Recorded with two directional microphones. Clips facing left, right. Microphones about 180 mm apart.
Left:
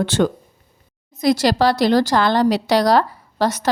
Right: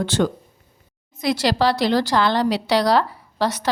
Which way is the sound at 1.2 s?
40° left (ahead or behind).